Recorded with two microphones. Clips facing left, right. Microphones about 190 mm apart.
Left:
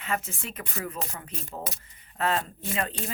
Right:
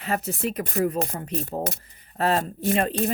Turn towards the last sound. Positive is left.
turn(degrees=-40)  # may be behind; listen again after turning